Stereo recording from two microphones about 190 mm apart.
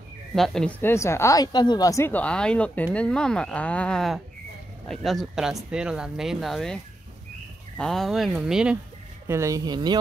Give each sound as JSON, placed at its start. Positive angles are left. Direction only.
{"t": 0.3, "sound": "speech", "side_deg": 0}
{"t": 9.3, "sound": "speech", "side_deg": -15}